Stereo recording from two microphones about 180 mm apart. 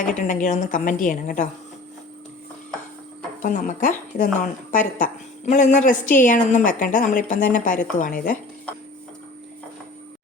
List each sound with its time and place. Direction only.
0.2 s a woman's voice: 45° left (ahead or behind)
3.4 s a woman's voice: 45° left (ahead or behind)